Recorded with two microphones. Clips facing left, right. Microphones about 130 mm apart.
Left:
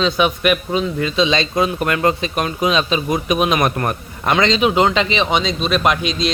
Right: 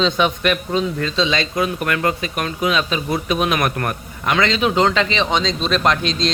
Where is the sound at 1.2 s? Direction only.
25° left (ahead or behind).